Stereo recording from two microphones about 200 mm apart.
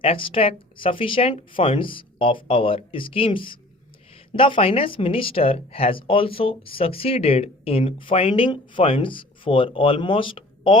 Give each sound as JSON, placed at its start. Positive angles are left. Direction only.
{"t": 0.0, "sound": "speech", "side_deg": 25}